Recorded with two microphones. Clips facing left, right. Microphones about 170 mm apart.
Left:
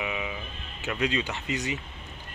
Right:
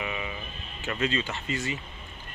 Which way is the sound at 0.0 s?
10° left (ahead or behind).